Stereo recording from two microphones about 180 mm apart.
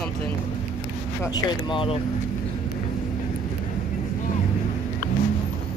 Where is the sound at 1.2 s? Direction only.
25° left (ahead or behind).